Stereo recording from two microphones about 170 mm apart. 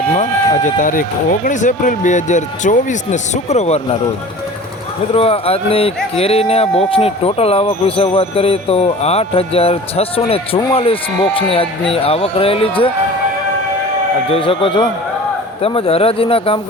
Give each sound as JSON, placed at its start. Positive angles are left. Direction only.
{"t": 0.1, "sound": "speech", "side_deg": 45}
{"t": 5.1, "sound": "a man's voice", "side_deg": 35}
{"t": 14.3, "sound": "a man's voice", "side_deg": 30}